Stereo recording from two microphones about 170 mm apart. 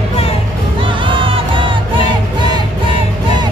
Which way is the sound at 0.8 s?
30° right (ahead or behind).